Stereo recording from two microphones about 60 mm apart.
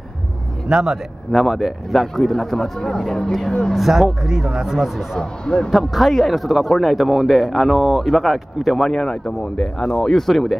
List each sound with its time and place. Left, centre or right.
0.7 s a man's voice: centre
1.3 s speech: centre
3.7 s speech: centre
5.2 s speech: centre
5.7 s speech: centre